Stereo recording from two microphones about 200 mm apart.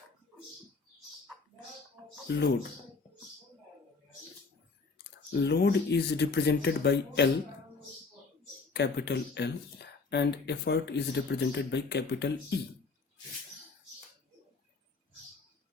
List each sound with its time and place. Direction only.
2.3 s speech: 55° left (ahead or behind)
5.3 s speech: 60° left (ahead or behind)
8.7 s speech: 55° left (ahead or behind)